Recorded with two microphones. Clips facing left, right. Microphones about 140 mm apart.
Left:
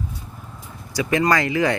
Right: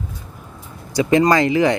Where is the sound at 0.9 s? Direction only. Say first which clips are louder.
Right 5 dB; 25° right (ahead or behind).